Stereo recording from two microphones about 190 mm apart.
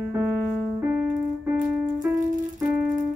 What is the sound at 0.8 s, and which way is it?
Music, 10° right (ahead or behind).